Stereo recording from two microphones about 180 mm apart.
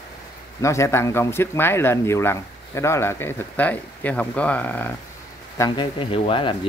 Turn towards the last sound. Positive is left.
turn(degrees=30)  # may be behind; listen again after turning